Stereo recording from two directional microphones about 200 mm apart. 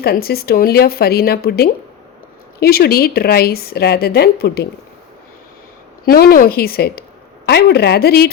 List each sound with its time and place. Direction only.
0.0 s a woman's voice: 50° left (ahead or behind)
6.1 s a woman's voice: 50° left (ahead or behind)